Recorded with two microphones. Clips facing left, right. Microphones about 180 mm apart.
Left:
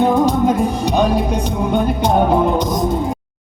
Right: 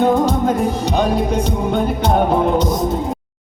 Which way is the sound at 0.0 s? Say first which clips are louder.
Left 1 dB; 15° left (ahead or behind).